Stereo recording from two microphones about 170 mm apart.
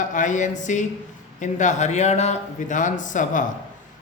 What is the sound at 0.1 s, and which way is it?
Speech, 45° left (ahead or behind).